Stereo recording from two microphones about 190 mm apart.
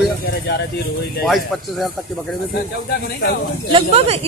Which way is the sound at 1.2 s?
Centre (ahead or behind).